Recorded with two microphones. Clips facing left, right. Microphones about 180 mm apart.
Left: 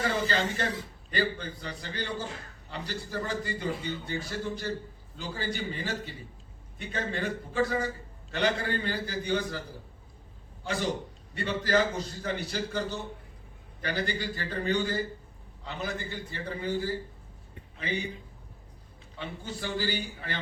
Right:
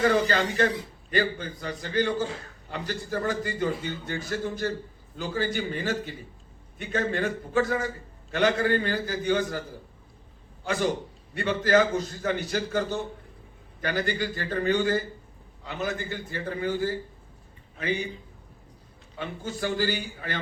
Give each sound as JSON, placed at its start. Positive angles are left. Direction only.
{"t": 0.0, "sound": "a man's voice", "side_deg": -55}
{"t": 11.3, "sound": "a man's voice", "side_deg": -50}
{"t": 19.2, "sound": "a man's voice", "side_deg": -45}